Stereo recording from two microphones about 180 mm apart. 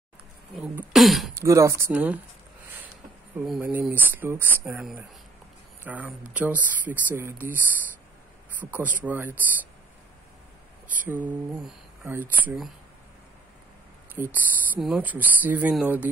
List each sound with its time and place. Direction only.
0.6 s speech: centre (ahead or behind)
1.3 s speech: 15° right (ahead or behind)
3.4 s speech: 5° right (ahead or behind)
5.9 s speech: 10° right (ahead or behind)
11.1 s speech: 10° right (ahead or behind)
14.1 s speech: 10° right (ahead or behind)